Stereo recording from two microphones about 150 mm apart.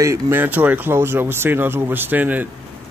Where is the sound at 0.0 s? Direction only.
15° right (ahead or behind).